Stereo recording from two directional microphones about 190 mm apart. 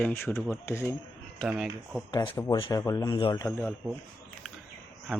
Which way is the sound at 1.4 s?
Centre (ahead or behind).